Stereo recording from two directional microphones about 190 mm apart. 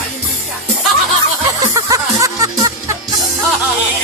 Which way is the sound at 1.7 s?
15° right (ahead or behind).